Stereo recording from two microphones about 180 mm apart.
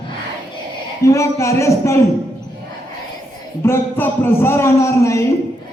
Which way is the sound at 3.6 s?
15° left (ahead or behind).